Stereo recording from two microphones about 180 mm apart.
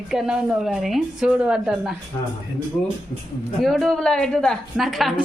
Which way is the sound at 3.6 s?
Centre (ahead or behind).